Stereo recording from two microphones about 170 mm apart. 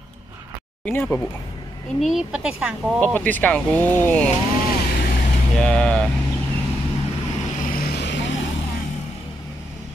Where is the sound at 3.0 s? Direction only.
10° left (ahead or behind).